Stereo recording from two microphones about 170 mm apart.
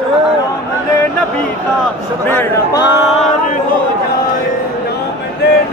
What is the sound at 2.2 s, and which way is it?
Speech, 10° left (ahead or behind).